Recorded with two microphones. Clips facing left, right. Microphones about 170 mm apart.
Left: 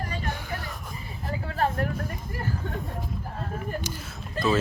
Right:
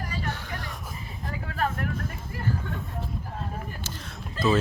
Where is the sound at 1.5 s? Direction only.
30° left (ahead or behind).